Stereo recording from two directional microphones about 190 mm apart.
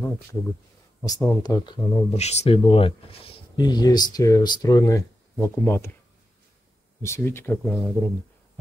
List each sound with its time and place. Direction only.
0.0 s speech: 10° left (ahead or behind)
7.0 s speech: 15° left (ahead or behind)